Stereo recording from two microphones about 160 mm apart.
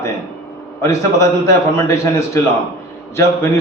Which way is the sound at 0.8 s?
20° left (ahead or behind).